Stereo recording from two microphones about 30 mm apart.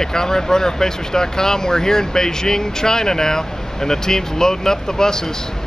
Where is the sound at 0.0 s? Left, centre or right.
Centre.